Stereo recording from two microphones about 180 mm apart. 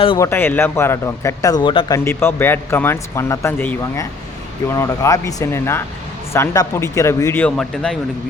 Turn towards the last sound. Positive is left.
turn(degrees=5)  # may be behind; listen again after turning